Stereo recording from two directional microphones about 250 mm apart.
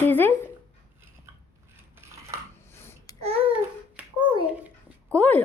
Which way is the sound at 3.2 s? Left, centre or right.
Right.